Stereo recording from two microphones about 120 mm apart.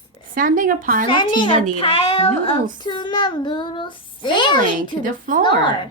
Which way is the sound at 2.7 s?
40° left (ahead or behind).